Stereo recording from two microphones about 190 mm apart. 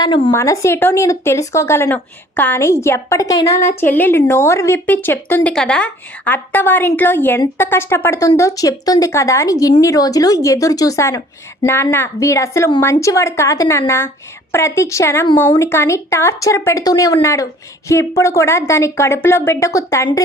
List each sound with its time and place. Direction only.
0.3 s speech: 15° left (ahead or behind)